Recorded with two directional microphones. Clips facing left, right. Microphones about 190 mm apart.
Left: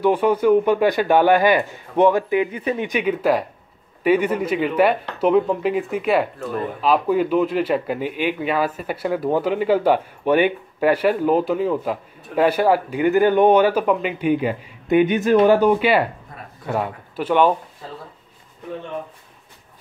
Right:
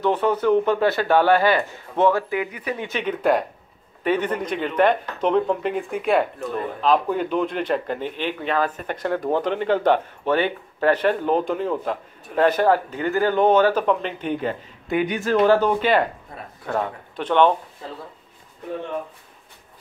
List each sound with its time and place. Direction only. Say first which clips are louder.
0.0 s speech: left 3 dB; 10° left (ahead or behind)
14.9 s speech: left 6 dB; 20° left (ahead or behind)